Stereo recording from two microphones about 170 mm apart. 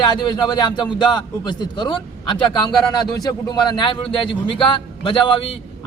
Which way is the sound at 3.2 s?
25° left (ahead or behind).